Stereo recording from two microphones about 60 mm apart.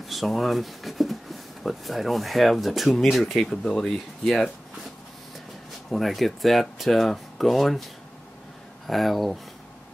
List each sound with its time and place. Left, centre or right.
0.0 s speech: centre
5.9 s speech: centre
8.8 s speech: centre